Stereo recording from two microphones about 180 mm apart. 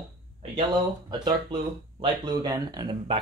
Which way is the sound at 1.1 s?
25° right (ahead or behind).